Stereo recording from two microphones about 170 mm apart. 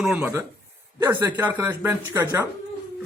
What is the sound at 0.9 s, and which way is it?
Speech, 20° right (ahead or behind).